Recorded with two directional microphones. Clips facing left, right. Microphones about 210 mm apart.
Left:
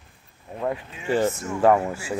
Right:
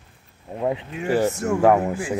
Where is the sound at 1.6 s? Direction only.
15° right (ahead or behind).